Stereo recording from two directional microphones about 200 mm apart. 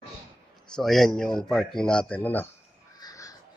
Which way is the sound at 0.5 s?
Centre (ahead or behind).